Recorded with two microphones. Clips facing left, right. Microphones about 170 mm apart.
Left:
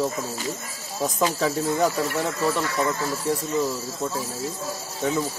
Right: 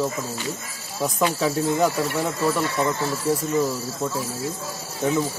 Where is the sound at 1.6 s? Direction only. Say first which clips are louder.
Right 2 dB; 20° right (ahead or behind).